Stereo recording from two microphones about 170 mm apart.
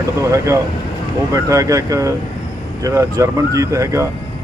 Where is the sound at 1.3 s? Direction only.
20° right (ahead or behind).